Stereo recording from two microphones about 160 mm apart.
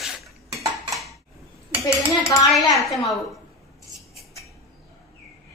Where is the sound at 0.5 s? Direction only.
20° right (ahead or behind).